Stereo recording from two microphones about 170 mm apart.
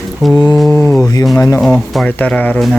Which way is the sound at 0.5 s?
5° left (ahead or behind).